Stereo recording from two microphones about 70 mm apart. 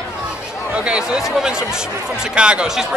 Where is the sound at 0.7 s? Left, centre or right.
Centre.